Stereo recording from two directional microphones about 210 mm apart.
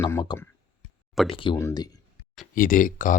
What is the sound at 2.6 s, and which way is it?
Speech, 40° left (ahead or behind).